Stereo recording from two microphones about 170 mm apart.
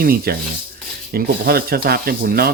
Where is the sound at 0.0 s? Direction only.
60° right (ahead or behind).